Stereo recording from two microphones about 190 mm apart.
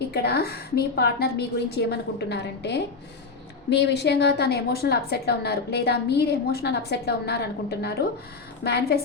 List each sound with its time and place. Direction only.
0.1 s a woman's voice: 55° left (ahead or behind)